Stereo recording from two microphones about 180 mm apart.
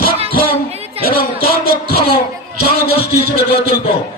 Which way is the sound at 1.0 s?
55° left (ahead or behind).